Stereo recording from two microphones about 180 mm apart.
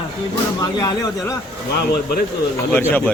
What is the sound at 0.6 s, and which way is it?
Speech, 20° left (ahead or behind).